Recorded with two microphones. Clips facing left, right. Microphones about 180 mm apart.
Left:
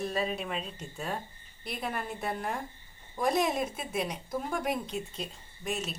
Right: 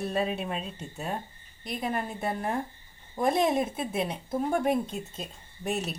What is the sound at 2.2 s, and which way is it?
Speech, 25° right (ahead or behind).